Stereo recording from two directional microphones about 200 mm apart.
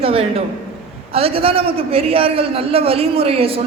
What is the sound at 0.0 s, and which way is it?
A man's voice, 30° right (ahead or behind).